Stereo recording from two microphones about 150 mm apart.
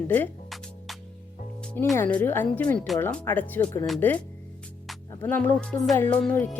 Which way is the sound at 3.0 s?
15° left (ahead or behind).